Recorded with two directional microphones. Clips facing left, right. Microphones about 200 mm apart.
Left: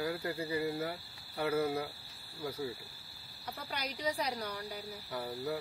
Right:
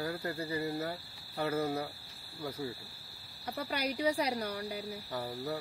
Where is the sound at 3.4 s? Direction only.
10° right (ahead or behind).